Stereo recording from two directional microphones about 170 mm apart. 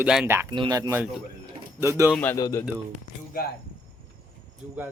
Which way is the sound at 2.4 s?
20° left (ahead or behind).